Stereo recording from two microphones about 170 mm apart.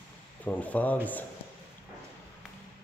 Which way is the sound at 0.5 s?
10° left (ahead or behind).